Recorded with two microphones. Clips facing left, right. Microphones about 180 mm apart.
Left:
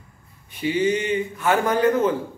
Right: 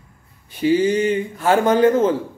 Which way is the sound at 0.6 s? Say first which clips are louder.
Right 5 dB; 35° right (ahead or behind).